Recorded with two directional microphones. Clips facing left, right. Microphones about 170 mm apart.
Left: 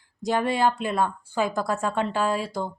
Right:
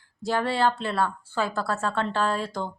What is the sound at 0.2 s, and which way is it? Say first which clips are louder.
Speech: left 1 dB; 20° left (ahead or behind).